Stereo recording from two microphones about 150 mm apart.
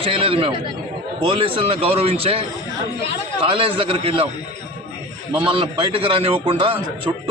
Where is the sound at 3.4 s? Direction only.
35° right (ahead or behind).